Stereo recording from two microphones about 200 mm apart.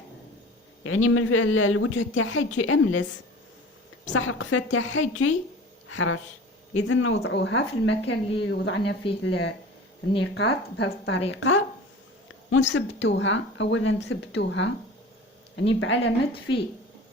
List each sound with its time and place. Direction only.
0.9 s speech: 90° left
4.1 s speech: 80° left
11.3 s speech: 65° left (ahead or behind)